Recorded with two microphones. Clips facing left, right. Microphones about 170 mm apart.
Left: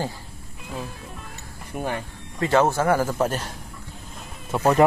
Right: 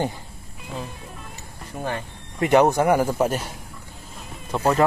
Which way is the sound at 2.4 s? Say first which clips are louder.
Right 3 dB; 15° right (ahead or behind).